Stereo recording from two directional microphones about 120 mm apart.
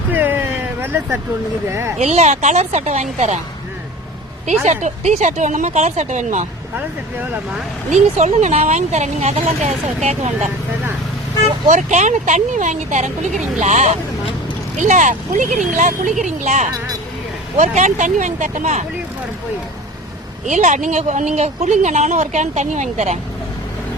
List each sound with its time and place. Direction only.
0.1 s a sound: 15° right (ahead or behind)
1.6 s speech: 20° right (ahead or behind)
2.0 s speech: 70° right (ahead or behind)
4.6 s speech: 70° right (ahead or behind)
6.7 s speech: 15° right (ahead or behind)
7.9 s speech: 80° right
11.7 s speech: 85° right
13.6 s speech: 75° right (ahead or behind)
14.8 s speech: 90° right
20.4 s speech: 90° right